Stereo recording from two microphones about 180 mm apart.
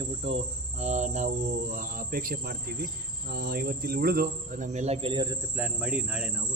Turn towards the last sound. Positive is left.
turn(degrees=-5)  # may be behind; listen again after turning